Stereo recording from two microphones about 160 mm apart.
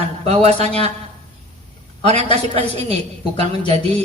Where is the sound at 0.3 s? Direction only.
45° right (ahead or behind).